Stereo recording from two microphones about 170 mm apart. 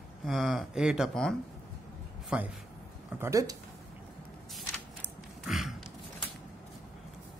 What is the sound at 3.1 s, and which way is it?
Speech, 15° right (ahead or behind).